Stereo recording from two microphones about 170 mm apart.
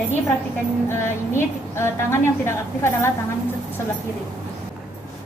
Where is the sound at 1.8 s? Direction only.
15° left (ahead or behind).